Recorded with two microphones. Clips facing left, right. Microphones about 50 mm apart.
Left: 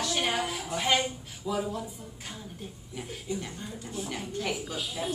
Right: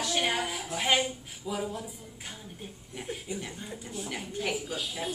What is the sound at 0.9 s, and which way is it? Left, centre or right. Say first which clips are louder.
A woman's voice: even; centre.